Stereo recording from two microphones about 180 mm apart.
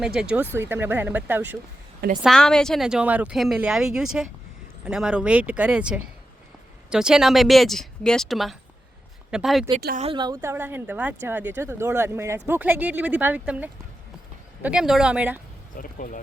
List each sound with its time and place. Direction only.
0.0 s speech: 5° right (ahead or behind)
2.2 s speech: 5° left (ahead or behind)
10.0 s speech: 30° right (ahead or behind); by 15.4 s 5° right (ahead or behind)
15.7 s speech: 50° left (ahead or behind)